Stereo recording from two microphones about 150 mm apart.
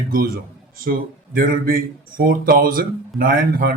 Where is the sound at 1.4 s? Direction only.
70° right (ahead or behind).